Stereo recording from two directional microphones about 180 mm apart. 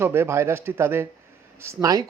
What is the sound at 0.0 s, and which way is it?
Speech, 15° right (ahead or behind).